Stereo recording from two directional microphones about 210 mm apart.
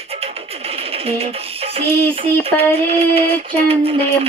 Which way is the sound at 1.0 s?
30° right (ahead or behind).